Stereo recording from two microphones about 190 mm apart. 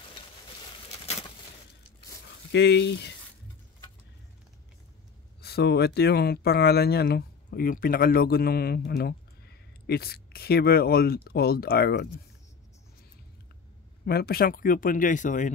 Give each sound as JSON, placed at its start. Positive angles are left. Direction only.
{"t": 2.5, "sound": "speech", "side_deg": 65}
{"t": 5.4, "sound": "speech", "side_deg": 60}
{"t": 14.0, "sound": "speech", "side_deg": 55}